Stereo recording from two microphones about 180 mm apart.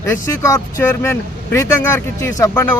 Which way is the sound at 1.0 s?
15° left (ahead or behind).